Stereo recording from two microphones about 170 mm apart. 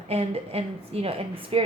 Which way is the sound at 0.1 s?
35° right (ahead or behind).